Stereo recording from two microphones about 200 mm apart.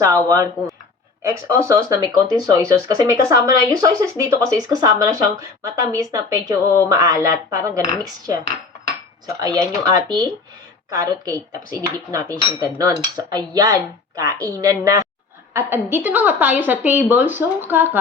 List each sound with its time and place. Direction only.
0.0 s speech: 15° right (ahead or behind)
9.4 s cutlery: 20° right (ahead or behind)
10.8 s speech: 15° right (ahead or behind)
12.5 s cutlery: 20° right (ahead or behind)
14.2 s speech: 20° right (ahead or behind)